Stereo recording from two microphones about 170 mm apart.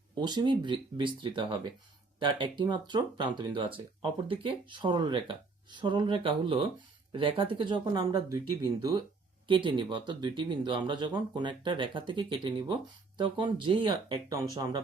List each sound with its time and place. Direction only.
0.2 s speech: 25° right (ahead or behind)